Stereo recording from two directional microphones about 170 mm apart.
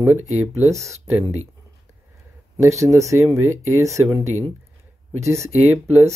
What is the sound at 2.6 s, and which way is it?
Speech, 15° right (ahead or behind).